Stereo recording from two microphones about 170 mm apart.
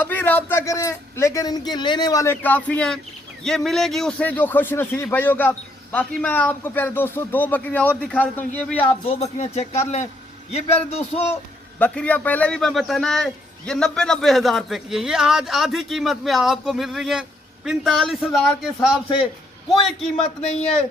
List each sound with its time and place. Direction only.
0.0 s a man's voice: 10° left (ahead or behind)
8.9 s speech: 35° left (ahead or behind)
11.8 s a man's voice: 10° left (ahead or behind)